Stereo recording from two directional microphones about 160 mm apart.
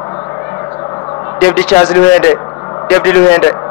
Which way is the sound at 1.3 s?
10° left (ahead or behind).